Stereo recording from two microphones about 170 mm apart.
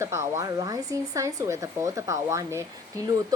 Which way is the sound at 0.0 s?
15° right (ahead or behind).